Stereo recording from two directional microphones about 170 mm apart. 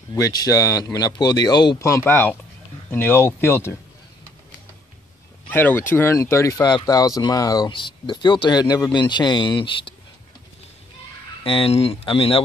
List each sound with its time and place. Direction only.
0.1 s speech: 20° left (ahead or behind)
5.5 s speech: 10° left (ahead or behind); by 9.9 s 30° left (ahead or behind)
11.4 s speech: 35° left (ahead or behind)